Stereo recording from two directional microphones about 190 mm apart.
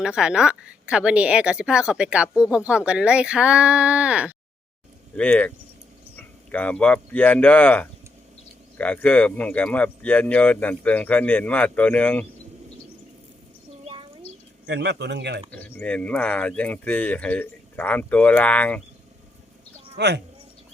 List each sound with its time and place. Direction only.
0.0 s speech: 5° right (ahead or behind)
5.1 s speech: 5° left (ahead or behind)
13.8 s a sound: 30° right (ahead or behind)
14.7 s speech: 65° right (ahead or behind)
15.5 s speech: 10° left (ahead or behind)
20.0 s speech: 65° right (ahead or behind)